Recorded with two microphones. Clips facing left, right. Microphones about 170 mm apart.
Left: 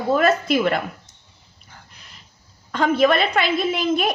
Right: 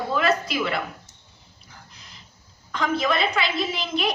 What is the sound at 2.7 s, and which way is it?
A woman's voice, 55° left (ahead or behind).